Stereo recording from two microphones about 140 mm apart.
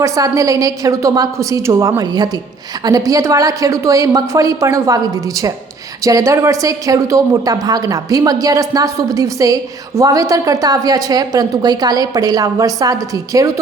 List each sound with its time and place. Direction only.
0.0 s a woman's voice: 25° right (ahead or behind)